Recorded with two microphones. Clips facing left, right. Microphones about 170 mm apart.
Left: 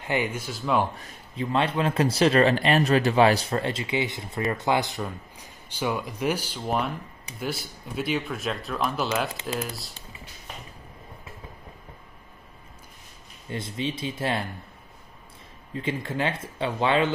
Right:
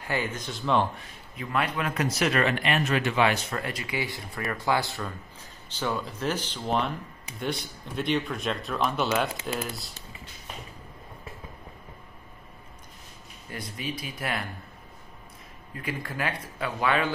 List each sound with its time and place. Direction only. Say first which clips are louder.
0.0 s speech: left 3 dB; 15° left (ahead or behind)
1.3 s speech: left 4 dB; 25° left (ahead or behind); by 9.9 s centre (ahead or behind)
13.5 s speech: left 5 dB; 25° left (ahead or behind)
15.7 s speech: left 5 dB; 25° left (ahead or behind)